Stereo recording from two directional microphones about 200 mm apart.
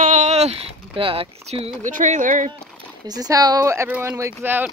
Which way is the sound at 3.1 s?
20° right (ahead or behind).